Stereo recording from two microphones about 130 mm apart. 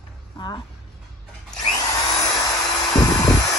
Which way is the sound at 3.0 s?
25° left (ahead or behind).